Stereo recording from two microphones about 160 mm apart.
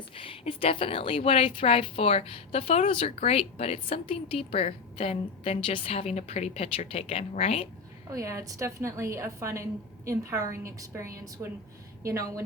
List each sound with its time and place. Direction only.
0.2 s a woman's voice: 35° left (ahead or behind)
8.1 s a woman's voice: 20° right (ahead or behind)